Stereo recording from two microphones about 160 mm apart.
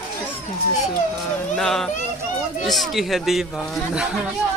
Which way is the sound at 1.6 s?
Centre (ahead or behind).